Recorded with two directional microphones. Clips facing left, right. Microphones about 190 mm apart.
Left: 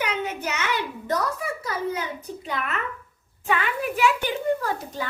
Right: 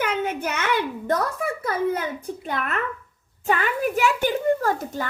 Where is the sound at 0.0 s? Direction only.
50° right (ahead or behind).